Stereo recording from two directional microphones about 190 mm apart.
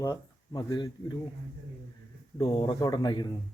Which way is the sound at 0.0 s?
20° left (ahead or behind).